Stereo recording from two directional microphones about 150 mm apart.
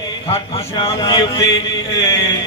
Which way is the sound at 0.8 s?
30° left (ahead or behind).